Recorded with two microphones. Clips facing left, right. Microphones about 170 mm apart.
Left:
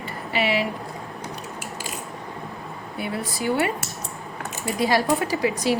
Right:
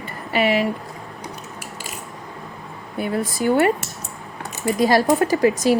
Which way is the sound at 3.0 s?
45° right (ahead or behind).